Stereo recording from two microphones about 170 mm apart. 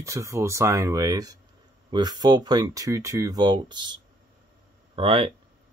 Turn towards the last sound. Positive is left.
turn(degrees=-35)  # may be behind; listen again after turning